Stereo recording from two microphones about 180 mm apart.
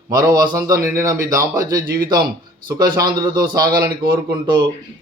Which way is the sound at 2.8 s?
25° right (ahead or behind).